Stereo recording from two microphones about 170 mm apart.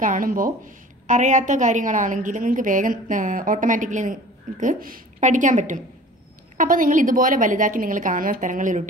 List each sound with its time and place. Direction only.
0.0 s a woman's voice: 55° right (ahead or behind)